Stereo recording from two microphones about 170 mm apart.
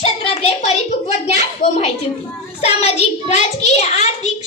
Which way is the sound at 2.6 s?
40° left (ahead or behind).